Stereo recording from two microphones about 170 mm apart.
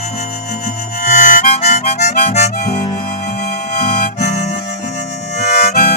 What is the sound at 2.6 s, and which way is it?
Harmonica, 50° left (ahead or behind).